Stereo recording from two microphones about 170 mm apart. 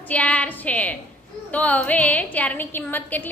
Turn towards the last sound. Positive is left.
turn(degrees=10)  # may be behind; listen again after turning